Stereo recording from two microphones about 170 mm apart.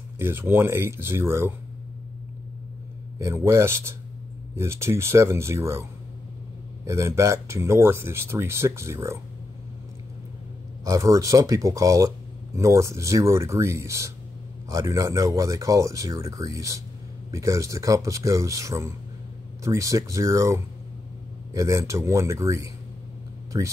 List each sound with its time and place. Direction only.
0.2 s speech: 15° right (ahead or behind)
3.2 s speech: 15° right (ahead or behind)
6.9 s speech: 15° right (ahead or behind)
10.8 s speech: 20° right (ahead or behind)